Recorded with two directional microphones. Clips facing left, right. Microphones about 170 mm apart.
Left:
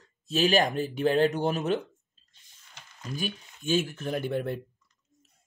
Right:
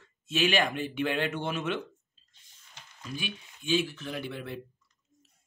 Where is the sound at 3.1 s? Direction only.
45° left (ahead or behind).